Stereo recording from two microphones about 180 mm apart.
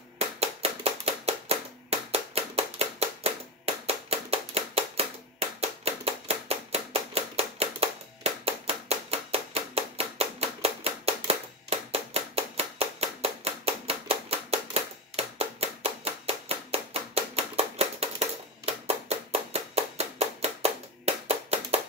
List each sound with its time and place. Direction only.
0.4 s hands: 35° right (ahead or behind)